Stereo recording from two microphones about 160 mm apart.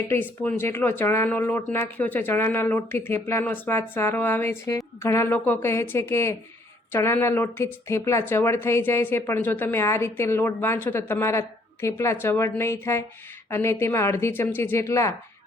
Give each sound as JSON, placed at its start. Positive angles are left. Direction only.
{"t": 0.1, "sound": "speech", "side_deg": 15}